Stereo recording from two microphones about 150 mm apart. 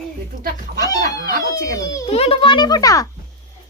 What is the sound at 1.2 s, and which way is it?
Speech, 75° right (ahead or behind).